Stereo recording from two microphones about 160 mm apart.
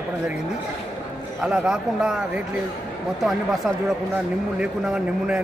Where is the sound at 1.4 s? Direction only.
5° right (ahead or behind).